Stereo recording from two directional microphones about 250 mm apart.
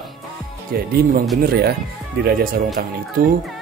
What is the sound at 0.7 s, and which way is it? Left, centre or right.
Speech, right.